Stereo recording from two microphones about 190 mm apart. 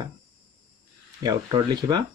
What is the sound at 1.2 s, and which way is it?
Speech, 20° right (ahead or behind).